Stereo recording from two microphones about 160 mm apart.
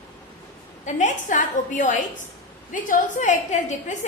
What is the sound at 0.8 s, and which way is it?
A woman's voice, 50° left (ahead or behind).